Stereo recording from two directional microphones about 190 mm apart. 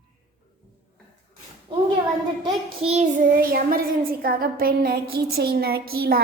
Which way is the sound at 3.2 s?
50° right (ahead or behind).